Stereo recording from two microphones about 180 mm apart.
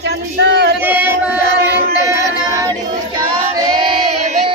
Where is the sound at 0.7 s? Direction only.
10° right (ahead or behind).